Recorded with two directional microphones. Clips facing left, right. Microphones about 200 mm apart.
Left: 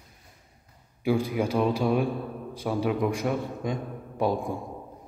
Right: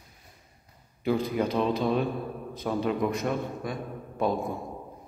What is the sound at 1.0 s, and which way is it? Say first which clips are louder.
A man's voice: left 1 dB; 10° left (ahead or behind).